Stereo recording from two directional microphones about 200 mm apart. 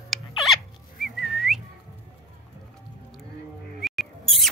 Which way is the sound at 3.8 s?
Centre (ahead or behind).